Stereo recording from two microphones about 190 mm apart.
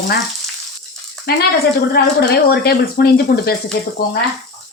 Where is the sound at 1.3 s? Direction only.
55° left (ahead or behind).